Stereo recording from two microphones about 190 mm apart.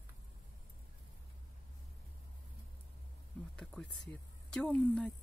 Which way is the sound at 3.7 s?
5° left (ahead or behind).